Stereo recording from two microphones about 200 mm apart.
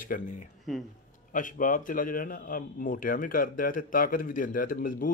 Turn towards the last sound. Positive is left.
turn(degrees=45)  # may be behind; listen again after turning